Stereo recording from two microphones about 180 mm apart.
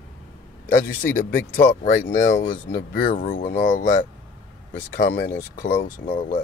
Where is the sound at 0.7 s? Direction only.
50° left (ahead or behind).